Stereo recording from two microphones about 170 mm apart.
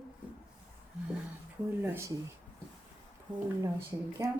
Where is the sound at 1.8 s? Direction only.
15° right (ahead or behind).